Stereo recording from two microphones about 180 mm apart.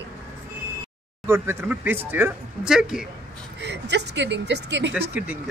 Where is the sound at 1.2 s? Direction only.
15° right (ahead or behind).